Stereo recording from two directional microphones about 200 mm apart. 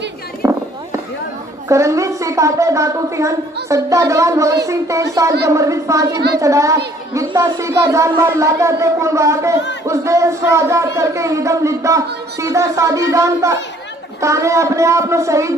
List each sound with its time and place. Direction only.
0.4 s fireworks: 15° right (ahead or behind)
1.7 s speech: 15° right (ahead or behind)
6.1 s a child's voice: 55° right (ahead or behind)
6.4 s speech: 15° right (ahead or behind)